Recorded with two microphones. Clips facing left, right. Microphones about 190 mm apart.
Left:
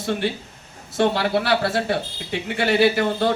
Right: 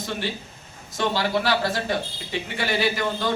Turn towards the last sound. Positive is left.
turn(degrees=60)  # may be behind; listen again after turning